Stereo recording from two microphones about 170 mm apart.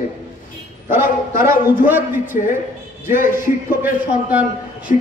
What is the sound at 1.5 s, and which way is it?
A man's voice, 10° right (ahead or behind).